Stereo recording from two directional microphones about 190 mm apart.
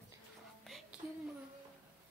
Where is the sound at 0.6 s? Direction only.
Centre (ahead or behind).